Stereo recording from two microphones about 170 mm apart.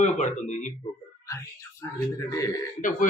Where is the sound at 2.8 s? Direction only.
50° left (ahead or behind).